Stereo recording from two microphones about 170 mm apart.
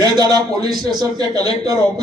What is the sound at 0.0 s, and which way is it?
A man's voice, 25° right (ahead or behind).